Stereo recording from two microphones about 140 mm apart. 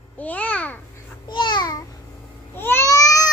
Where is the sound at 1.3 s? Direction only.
35° left (ahead or behind).